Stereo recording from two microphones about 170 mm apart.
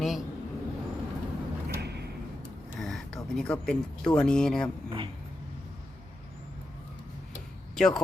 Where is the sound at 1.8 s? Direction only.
75° right (ahead or behind).